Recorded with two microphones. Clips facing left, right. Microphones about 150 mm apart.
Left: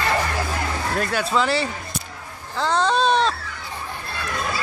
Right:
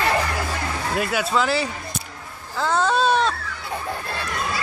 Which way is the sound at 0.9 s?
5° right (ahead or behind).